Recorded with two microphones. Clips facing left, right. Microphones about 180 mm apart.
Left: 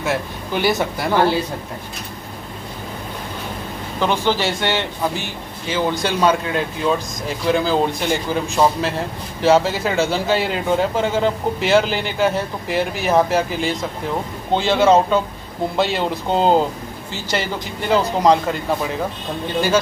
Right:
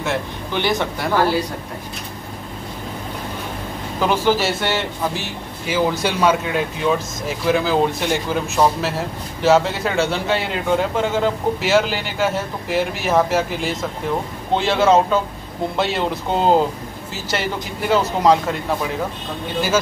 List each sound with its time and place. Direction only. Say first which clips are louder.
0.0 s a man's voice: left 1 dB; 5° left (ahead or behind)
1.1 s speech: left 1 dB; 25° left (ahead or behind)
4.0 s a man's voice: right 1 dB; 5° right (ahead or behind)